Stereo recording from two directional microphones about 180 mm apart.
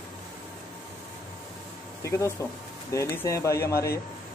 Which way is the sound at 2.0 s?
15° left (ahead or behind).